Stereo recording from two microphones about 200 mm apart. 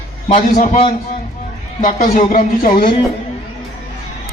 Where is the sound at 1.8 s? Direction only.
35° left (ahead or behind).